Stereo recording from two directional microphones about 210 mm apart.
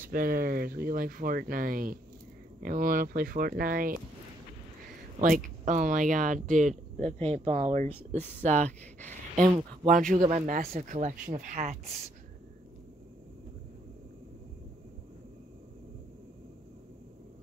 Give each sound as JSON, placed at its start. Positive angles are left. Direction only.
{"t": 0.0, "sound": "speech", "side_deg": -40}
{"t": 5.2, "sound": "speech", "side_deg": -35}